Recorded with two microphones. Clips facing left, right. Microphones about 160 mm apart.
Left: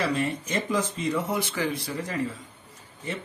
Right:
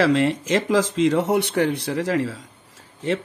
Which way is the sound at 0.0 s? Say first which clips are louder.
Right 8 dB; 90° right.